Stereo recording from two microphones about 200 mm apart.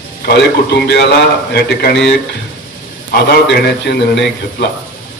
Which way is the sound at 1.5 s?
55° left (ahead or behind).